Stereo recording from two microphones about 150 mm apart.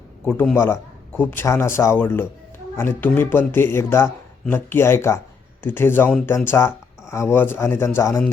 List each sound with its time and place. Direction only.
0.3 s a man's voice: 5° left (ahead or behind)
0.5 s speech: 15° left (ahead or behind)